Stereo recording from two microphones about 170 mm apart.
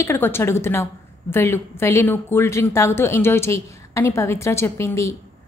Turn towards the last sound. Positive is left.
turn(degrees=15)  # may be behind; listen again after turning